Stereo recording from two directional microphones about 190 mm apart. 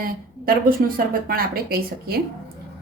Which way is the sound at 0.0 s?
50° right (ahead or behind).